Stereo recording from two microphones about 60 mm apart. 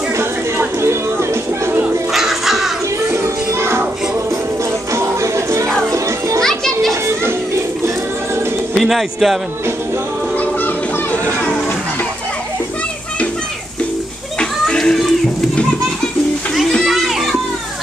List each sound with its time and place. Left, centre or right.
0.2 s a sound: right
2.1 s crow: centre
3.1 s music: right
5.9 s children playing: right
6.4 s children playing: centre
6.9 s children playing: right
8.7 s speech: centre
10.3 s music: left
14.4 s a sound: centre
16.8 s children playing: centre